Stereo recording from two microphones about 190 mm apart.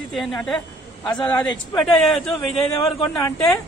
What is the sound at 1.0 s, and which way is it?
Speech, 25° left (ahead or behind).